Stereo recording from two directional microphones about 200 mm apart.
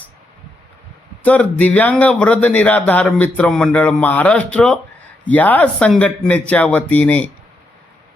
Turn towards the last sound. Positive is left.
turn(degrees=5)  # may be behind; listen again after turning